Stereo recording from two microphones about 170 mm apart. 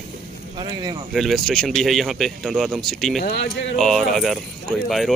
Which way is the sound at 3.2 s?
65° left (ahead or behind).